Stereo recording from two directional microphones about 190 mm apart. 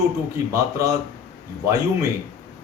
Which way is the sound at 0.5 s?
15° right (ahead or behind).